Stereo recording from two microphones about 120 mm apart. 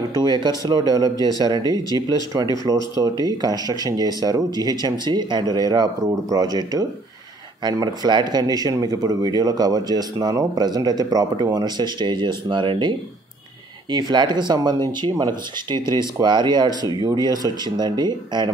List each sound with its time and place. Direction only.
0.1 s speech: 35° right (ahead or behind)